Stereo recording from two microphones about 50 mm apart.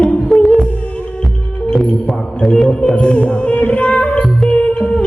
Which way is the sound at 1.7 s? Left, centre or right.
Centre.